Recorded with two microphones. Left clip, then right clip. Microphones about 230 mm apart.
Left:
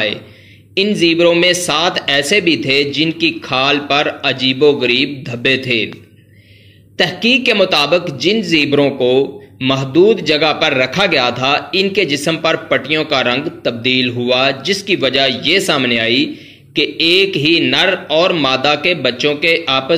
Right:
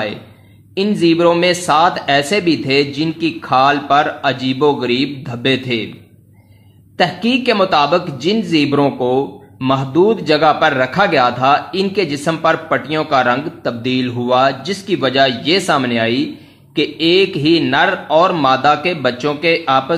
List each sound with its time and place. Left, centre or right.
1.1 s a man's voice: centre
7.0 s a man's voice: centre